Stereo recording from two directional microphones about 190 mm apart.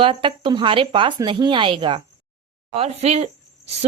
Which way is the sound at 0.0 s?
25° right (ahead or behind).